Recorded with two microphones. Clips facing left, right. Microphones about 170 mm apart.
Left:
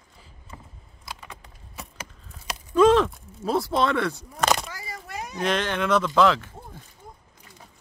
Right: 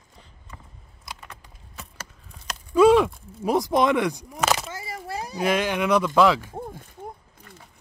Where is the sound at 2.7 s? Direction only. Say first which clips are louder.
Right 2 dB; 10° right (ahead or behind).